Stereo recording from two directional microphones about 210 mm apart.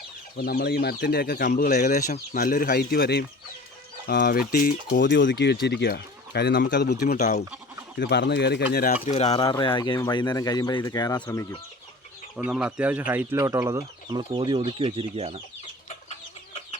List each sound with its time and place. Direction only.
0.3 s speech: 45° left (ahead or behind)
9.0 s speech: 30° left (ahead or behind); by 11.6 s 15° left (ahead or behind)
12.5 s speech: 5° right (ahead or behind); by 15.4 s 30° right (ahead or behind)